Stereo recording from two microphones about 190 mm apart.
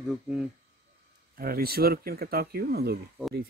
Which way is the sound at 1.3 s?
50° right (ahead or behind).